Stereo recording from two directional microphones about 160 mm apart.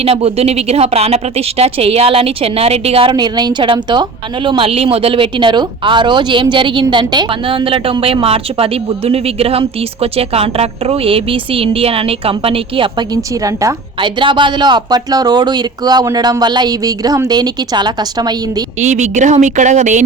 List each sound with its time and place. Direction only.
0.0 s speech: 40° right (ahead or behind)
13.4 s a woman's voice: 20° right (ahead or behind)
18.8 s speech: 45° right (ahead or behind)